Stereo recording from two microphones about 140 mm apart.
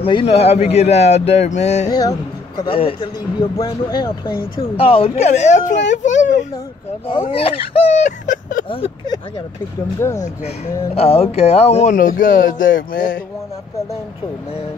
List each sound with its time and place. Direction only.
0.0 s a man's voice: 40° left (ahead or behind)
1.9 s speech: 25° left (ahead or behind)
2.7 s speech: 40° left (ahead or behind)
4.6 s speech: 45° left (ahead or behind); by 6.4 s 60° left (ahead or behind)
7.1 s a man's voice: 40° left (ahead or behind); by 8.6 s 70° left (ahead or behind)
8.6 s speech: 40° left (ahead or behind)
9.9 s speech: 20° left (ahead or behind)
11.0 s a man's voice: 50° left (ahead or behind)
11.9 s speech: 75° left (ahead or behind)